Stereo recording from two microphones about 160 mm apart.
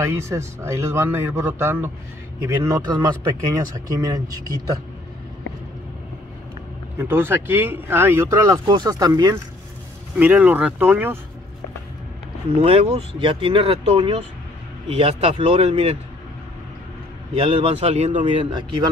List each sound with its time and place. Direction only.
0.0 s speech: 15° right (ahead or behind)
7.0 s speech: 15° right (ahead or behind)
10.1 s speech: 10° right (ahead or behind)
12.4 s speech: 40° right (ahead or behind)
17.3 s speech: 35° right (ahead or behind)